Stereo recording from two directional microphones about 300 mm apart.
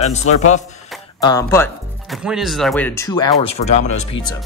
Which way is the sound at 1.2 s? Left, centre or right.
Centre.